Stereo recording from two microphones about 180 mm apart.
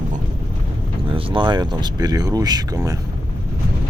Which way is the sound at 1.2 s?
30° right (ahead or behind).